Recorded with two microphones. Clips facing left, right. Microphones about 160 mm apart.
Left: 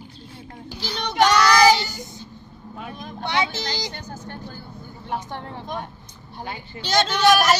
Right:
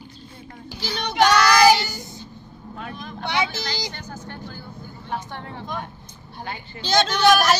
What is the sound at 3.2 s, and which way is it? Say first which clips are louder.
Speech: left 1 dB; 20° left (ahead or behind).